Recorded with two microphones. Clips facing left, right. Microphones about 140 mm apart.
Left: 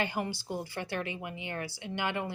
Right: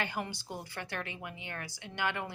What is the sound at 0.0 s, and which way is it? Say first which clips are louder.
A woman's voice: left 4 dB; 10° left (ahead or behind).